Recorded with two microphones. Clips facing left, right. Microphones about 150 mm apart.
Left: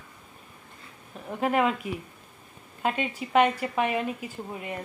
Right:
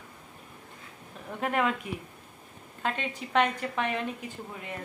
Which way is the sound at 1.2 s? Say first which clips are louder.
Left 4 dB; 5° left (ahead or behind).